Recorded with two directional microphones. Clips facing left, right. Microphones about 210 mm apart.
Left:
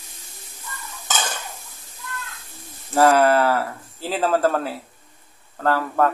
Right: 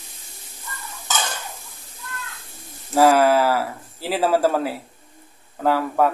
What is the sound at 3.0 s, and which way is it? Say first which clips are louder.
Speech: even; 5° right (ahead or behind).